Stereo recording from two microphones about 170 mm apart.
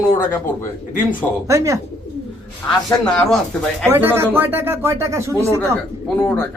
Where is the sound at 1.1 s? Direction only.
20° right (ahead or behind).